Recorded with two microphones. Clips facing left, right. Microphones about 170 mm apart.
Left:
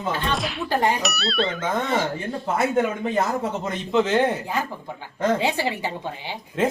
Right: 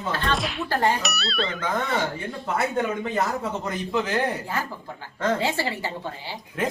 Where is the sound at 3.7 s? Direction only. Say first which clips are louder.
Left 6 dB; 25° left (ahead or behind).